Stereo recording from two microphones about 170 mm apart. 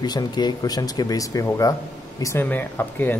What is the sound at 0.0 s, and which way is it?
Speech, 25° left (ahead or behind).